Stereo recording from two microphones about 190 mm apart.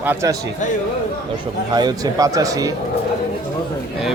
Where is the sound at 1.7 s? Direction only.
20° right (ahead or behind).